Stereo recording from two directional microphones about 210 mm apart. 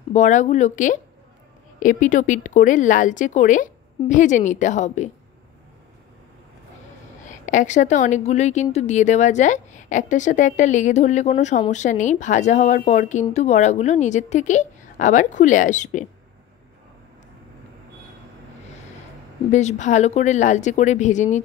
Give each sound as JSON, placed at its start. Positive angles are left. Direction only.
{"t": 0.1, "sound": "a woman's voice", "side_deg": 35}
{"t": 7.2, "sound": "a woman's voice", "side_deg": 35}
{"t": 19.5, "sound": "a woman's voice", "side_deg": 35}